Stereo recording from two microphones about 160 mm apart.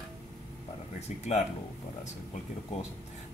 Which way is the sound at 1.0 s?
45° left (ahead or behind).